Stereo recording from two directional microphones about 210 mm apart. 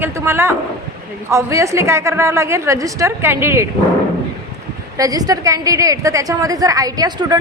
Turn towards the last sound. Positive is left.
turn(degrees=-20)  # may be behind; listen again after turning